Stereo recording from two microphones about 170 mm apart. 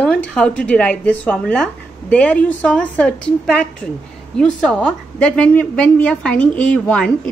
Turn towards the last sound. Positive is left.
turn(degrees=5)  # may be behind; listen again after turning